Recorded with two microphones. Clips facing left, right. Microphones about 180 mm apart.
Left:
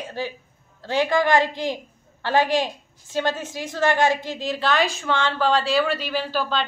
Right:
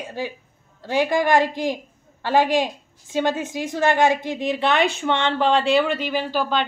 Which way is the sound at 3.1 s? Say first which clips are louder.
Right 3 dB; 15° right (ahead or behind).